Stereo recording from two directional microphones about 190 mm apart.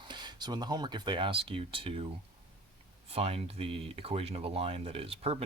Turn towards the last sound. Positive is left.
turn(degrees=-30)  # may be behind; listen again after turning